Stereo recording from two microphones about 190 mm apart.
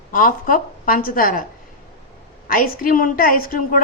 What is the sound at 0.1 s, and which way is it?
A woman's voice, 45° left (ahead or behind).